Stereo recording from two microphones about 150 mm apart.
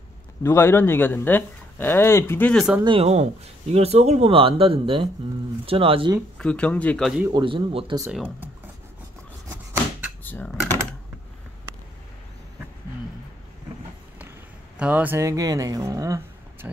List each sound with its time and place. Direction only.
0.4 s speech: 15° left (ahead or behind)
2.5 s speech: 5° right (ahead or behind)
2.8 s speech: 35° right (ahead or behind)
3.1 s speech: 45° right (ahead or behind)
6.3 s speech: 5° left (ahead or behind)
7.2 s speech: 30° right (ahead or behind)
8.1 s speech: 10° right (ahead or behind)
10.2 s typing: 10° left (ahead or behind)
14.8 s speech: 10° right (ahead or behind)
16.6 s speech: 10° right (ahead or behind)